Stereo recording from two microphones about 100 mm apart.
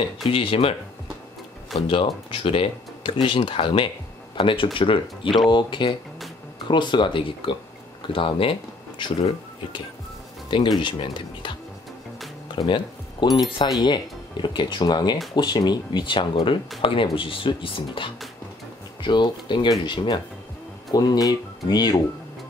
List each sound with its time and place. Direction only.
0.3 s speech: 65° left (ahead or behind)
1.8 s speech: 60° left (ahead or behind)
10.8 s speech: 50° left (ahead or behind)
12.6 s speech: 50° left (ahead or behind)
20.9 s speech: 40° left (ahead or behind)